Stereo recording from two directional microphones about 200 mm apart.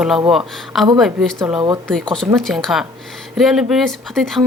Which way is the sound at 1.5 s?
20° right (ahead or behind).